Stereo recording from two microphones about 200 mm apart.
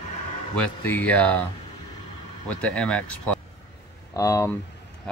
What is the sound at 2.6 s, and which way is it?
Speech, 5° left (ahead or behind).